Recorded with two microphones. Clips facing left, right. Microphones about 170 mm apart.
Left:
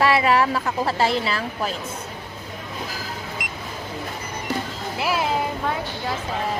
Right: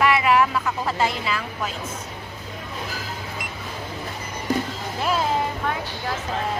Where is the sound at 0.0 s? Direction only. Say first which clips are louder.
Even; 35° left (ahead or behind).